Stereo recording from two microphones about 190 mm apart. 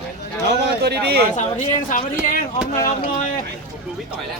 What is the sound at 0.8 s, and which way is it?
Speech, 55° right (ahead or behind).